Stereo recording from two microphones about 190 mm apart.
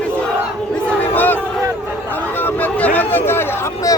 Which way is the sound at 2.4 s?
10° left (ahead or behind).